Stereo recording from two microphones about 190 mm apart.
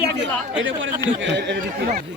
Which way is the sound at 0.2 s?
80° right.